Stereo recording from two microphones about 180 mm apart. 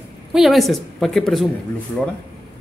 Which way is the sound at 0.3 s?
Centre (ahead or behind).